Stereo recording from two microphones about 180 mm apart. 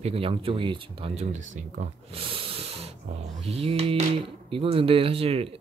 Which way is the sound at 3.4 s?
35° right (ahead or behind).